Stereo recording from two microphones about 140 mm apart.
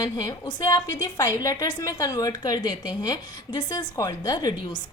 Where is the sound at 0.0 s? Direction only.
30° left (ahead or behind).